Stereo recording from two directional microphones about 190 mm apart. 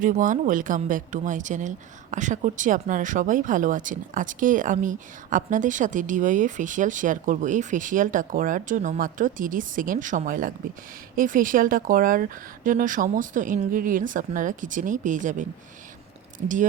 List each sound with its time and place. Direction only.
0.0 s speech: 45° right (ahead or behind)